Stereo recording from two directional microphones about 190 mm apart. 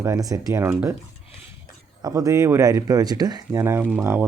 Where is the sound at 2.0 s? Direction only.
20° right (ahead or behind).